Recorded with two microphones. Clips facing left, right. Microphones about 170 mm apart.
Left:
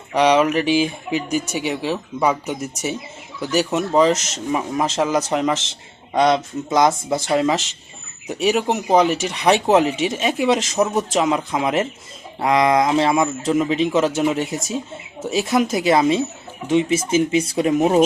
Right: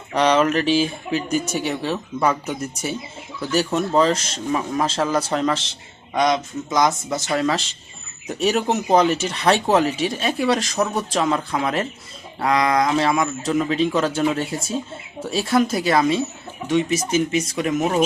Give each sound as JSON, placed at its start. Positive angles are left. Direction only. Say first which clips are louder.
{"t": 0.1, "sound": "speech", "louder": "left 2 dB", "side_deg": 10}
{"t": 6.1, "sound": "a man's voice", "louder": "left 3 dB", "side_deg": 30}